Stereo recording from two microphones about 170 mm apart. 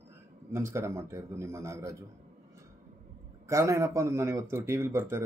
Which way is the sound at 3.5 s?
20° right (ahead or behind).